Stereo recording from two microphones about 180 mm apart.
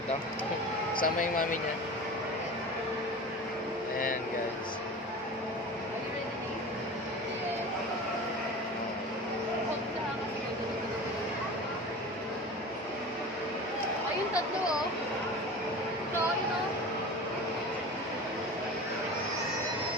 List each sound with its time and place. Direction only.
0.9 s speech: 50° left (ahead or behind)